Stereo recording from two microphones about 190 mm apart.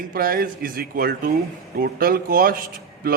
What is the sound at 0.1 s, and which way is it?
A man's voice, 50° right (ahead or behind).